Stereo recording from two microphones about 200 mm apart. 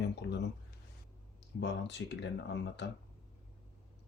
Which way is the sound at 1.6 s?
60° left (ahead or behind).